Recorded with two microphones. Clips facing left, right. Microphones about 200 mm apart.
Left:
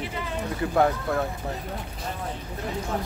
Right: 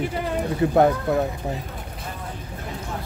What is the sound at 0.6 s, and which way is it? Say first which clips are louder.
Speech: right 8 dB; 25° right (ahead or behind).